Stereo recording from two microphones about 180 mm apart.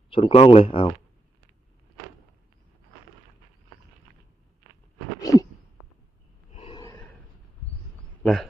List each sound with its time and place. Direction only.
0.1 s speech: 30° left (ahead or behind)
5.2 s a sound: 20° left (ahead or behind)
6.5 s gasp: 35° left (ahead or behind)
6.7 s gasp: 15° left (ahead or behind)
8.2 s speech: 5° left (ahead or behind)